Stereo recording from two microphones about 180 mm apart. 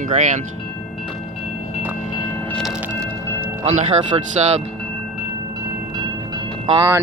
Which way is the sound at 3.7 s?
40° right (ahead or behind).